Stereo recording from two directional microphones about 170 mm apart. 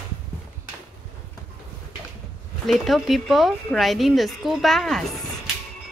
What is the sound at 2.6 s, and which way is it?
Speech, centre (ahead or behind).